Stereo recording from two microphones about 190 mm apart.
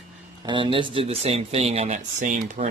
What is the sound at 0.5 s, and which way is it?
Speech, 25° right (ahead or behind).